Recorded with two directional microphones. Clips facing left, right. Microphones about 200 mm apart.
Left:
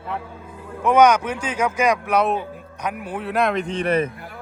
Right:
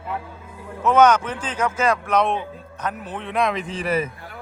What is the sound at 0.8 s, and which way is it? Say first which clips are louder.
Speech: left 1 dB; 10° left (ahead or behind).